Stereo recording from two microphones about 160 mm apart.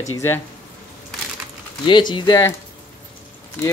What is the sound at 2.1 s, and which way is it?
Speech, 25° left (ahead or behind).